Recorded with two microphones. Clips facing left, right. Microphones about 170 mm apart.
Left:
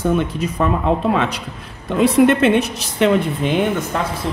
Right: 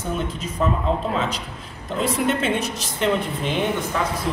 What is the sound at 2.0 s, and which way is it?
A woman's voice, 70° left (ahead or behind).